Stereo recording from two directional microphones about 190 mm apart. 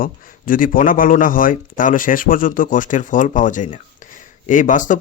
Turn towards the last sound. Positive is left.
turn(degrees=40)  # may be behind; listen again after turning